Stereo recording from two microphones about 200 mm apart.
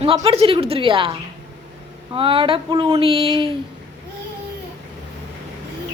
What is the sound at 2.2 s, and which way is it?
Speech, 25° right (ahead or behind).